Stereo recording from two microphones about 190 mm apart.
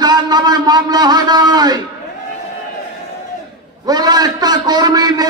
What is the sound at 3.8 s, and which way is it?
A man's voice, 20° right (ahead or behind).